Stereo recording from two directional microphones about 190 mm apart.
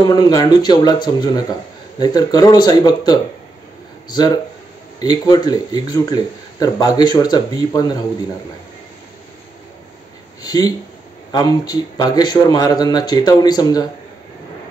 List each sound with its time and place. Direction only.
0.0 s speech: 20° left (ahead or behind)
10.4 s a sound: 20° left (ahead or behind)
11.3 s speech: 20° left (ahead or behind)